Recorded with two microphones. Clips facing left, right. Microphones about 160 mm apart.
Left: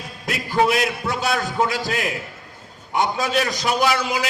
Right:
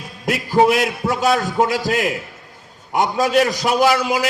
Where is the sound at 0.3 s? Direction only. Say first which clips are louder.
Right 5 dB; 40° right (ahead or behind).